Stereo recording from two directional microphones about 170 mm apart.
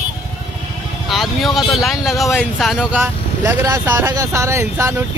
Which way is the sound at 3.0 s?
15° right (ahead or behind).